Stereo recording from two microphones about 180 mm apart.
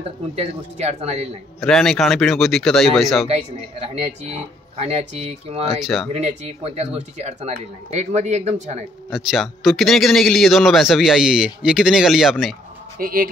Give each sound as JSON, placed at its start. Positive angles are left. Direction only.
{"t": 0.4, "sound": "speech", "side_deg": -35}
{"t": 1.6, "sound": "speech", "side_deg": 5}
{"t": 3.8, "sound": "speech", "side_deg": -35}
{"t": 5.8, "sound": "speech", "side_deg": 0}
{"t": 6.1, "sound": "speech", "side_deg": -35}
{"t": 9.1, "sound": "speech", "side_deg": 0}
{"t": 13.0, "sound": "speech", "side_deg": -55}